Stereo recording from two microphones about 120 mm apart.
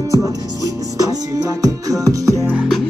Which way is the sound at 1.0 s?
30° right (ahead or behind).